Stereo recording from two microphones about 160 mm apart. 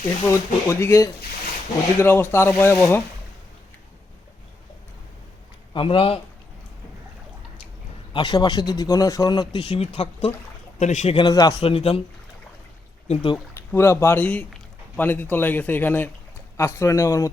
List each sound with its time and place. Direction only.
0.3 s speech: 20° left (ahead or behind)
5.7 s speech: 35° left (ahead or behind)
8.1 s speech: 30° left (ahead or behind); by 11.2 s 45° left (ahead or behind)
11.2 s speech: 20° left (ahead or behind)
11.5 s speech: 35° left (ahead or behind)
13.1 s speech: 30° left (ahead or behind)
13.5 s a man's voice: 15° left (ahead or behind)